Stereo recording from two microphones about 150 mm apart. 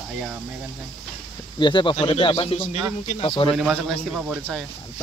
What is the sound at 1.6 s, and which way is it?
Speech, 30° left (ahead or behind).